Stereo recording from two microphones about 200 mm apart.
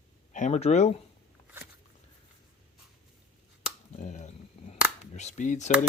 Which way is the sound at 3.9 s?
35° left (ahead or behind).